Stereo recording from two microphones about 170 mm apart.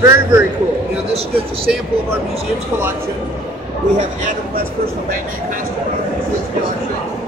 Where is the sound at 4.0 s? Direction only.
50° right (ahead or behind).